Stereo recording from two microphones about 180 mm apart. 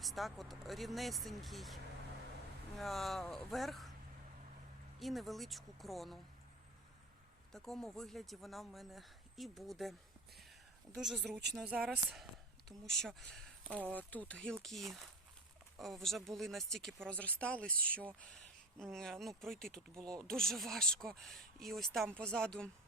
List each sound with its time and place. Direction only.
0.0 s speech: centre (ahead or behind)
4.9 s speech: centre (ahead or behind)
7.5 s speech: centre (ahead or behind)
11.0 s speech: 5° right (ahead or behind)
11.3 s speech: 70° right (ahead or behind)
11.8 s speech: centre (ahead or behind)